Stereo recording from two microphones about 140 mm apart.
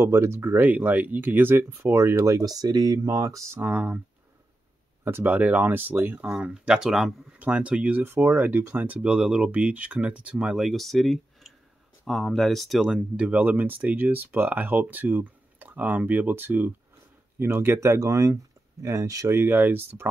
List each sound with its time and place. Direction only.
0.0 s speech: 20° right (ahead or behind)
5.0 s speech: 15° right (ahead or behind)